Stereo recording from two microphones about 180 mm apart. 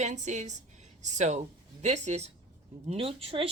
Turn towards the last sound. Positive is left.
turn(degrees=-30)  # may be behind; listen again after turning